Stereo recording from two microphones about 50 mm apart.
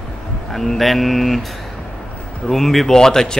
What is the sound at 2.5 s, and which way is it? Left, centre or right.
Speech, centre.